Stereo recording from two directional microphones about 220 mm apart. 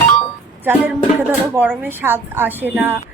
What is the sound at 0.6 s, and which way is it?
A woman's voice, 10° right (ahead or behind).